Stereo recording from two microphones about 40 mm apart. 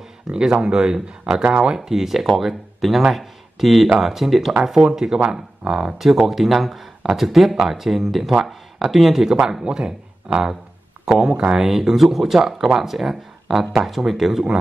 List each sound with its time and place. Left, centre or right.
0.3 s speech: right
1.9 s speech: centre
5.9 s speech: centre